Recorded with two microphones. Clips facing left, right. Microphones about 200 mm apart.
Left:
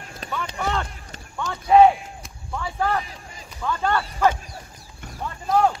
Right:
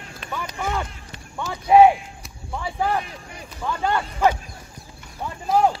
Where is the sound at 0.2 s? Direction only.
40° left (ahead or behind).